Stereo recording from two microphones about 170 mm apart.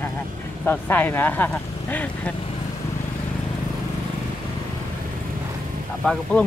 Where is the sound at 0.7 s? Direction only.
10° left (ahead or behind).